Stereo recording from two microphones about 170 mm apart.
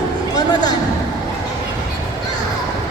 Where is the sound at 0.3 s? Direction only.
25° left (ahead or behind).